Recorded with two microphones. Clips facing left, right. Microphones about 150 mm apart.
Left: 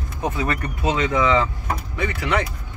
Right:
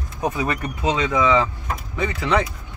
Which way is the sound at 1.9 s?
25° right (ahead or behind).